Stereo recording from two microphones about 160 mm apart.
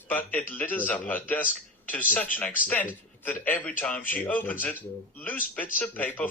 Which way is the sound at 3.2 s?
10° left (ahead or behind).